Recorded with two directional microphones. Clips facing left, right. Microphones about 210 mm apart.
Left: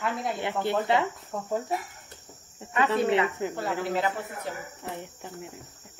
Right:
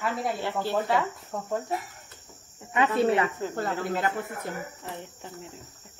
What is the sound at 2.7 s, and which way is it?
Speech, 25° right (ahead or behind).